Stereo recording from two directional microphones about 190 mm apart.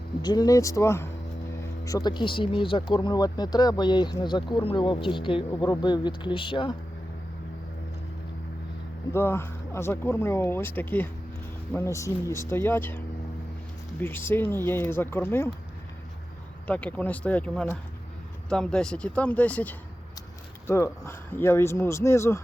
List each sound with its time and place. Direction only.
0.2 s speech: 20° left (ahead or behind)
9.1 s speech: 15° left (ahead or behind)
14.0 s speech: 10° left (ahead or behind)
16.6 s speech: 5° left (ahead or behind)